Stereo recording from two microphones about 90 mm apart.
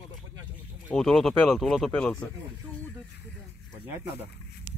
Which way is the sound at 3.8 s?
25° right (ahead or behind).